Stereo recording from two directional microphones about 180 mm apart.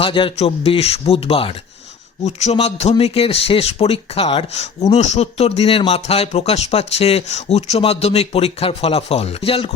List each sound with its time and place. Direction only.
0.0 s speech: 30° left (ahead or behind)